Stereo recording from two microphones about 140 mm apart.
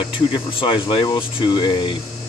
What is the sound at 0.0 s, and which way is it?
Speech, 35° left (ahead or behind).